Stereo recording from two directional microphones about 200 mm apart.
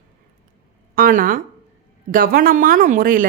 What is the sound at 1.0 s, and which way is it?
A woman's voice, 45° right (ahead or behind).